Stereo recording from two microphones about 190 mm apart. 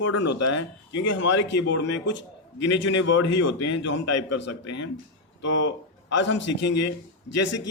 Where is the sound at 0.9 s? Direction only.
75° left (ahead or behind).